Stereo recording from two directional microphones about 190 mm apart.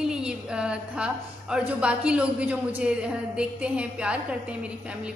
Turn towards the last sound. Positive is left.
turn(degrees=-5)  # may be behind; listen again after turning